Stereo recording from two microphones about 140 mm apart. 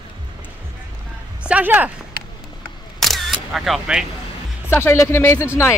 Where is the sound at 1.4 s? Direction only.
10° right (ahead or behind).